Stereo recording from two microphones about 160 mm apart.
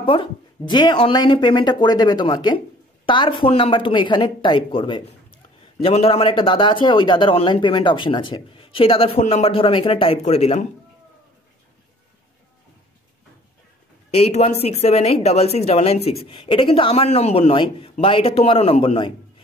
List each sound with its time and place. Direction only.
0.0 s speech: 30° left (ahead or behind)
14.1 s speech: 40° left (ahead or behind)